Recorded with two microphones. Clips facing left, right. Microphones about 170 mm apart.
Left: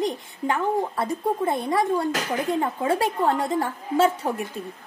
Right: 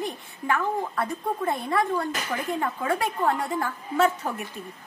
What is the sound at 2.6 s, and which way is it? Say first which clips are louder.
Speech: left 2 dB; 25° left (ahead or behind).